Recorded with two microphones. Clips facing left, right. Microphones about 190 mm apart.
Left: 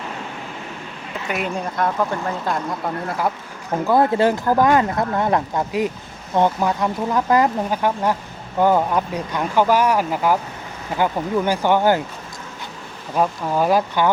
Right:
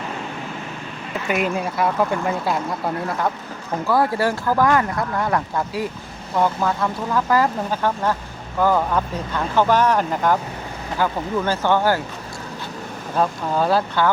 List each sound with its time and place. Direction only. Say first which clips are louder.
1.3 s speech: right 3 dB; 5° right (ahead or behind)
3.8 s speech: left 3 dB; 20° left (ahead or behind)
13.1 s speech: left 1 dB; 15° left (ahead or behind)